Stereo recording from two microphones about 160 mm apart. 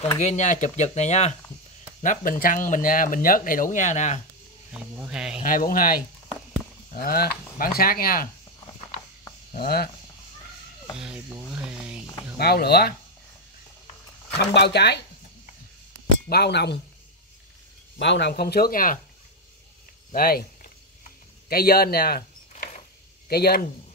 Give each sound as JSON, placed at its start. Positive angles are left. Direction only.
{"t": 0.2, "sound": "speech", "side_deg": 45}
{"t": 2.0, "sound": "speech", "side_deg": 60}
{"t": 4.7, "sound": "speech", "side_deg": -5}
{"t": 5.4, "sound": "speech", "side_deg": 60}
{"t": 7.0, "sound": "speech", "side_deg": 75}
{"t": 9.6, "sound": "speech", "side_deg": 75}
{"t": 11.0, "sound": "speech", "side_deg": -5}
{"t": 12.4, "sound": "speech", "side_deg": 80}
{"t": 14.4, "sound": "speech", "side_deg": 90}
{"t": 16.3, "sound": "speech", "side_deg": 90}
{"t": 17.9, "sound": "speech", "side_deg": 90}
{"t": 20.1, "sound": "a sound", "side_deg": 70}
{"t": 21.5, "sound": "speech", "side_deg": 70}
{"t": 23.2, "sound": "speech", "side_deg": 75}